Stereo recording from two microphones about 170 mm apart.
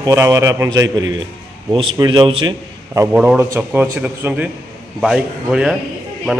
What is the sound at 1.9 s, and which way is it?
Speech, 25° right (ahead or behind).